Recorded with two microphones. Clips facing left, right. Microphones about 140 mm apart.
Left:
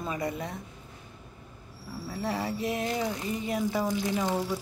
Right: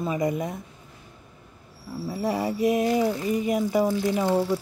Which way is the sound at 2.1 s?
15° right (ahead or behind).